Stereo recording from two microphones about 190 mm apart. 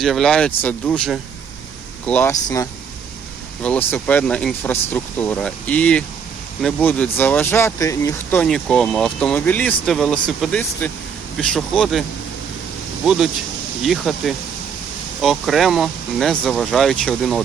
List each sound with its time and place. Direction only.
0.0 s speech: centre (ahead or behind)
13.1 s speech: centre (ahead or behind)